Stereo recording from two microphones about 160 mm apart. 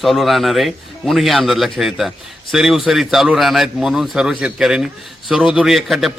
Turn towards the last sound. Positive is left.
turn(degrees=0)  # may be behind; listen again after turning